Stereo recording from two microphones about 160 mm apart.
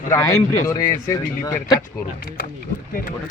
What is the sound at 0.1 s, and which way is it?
Speech, 20° left (ahead or behind).